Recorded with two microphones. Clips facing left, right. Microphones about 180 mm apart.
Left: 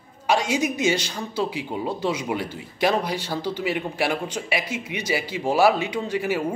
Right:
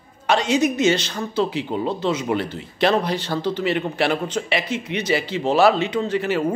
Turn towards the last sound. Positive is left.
turn(degrees=10)  # may be behind; listen again after turning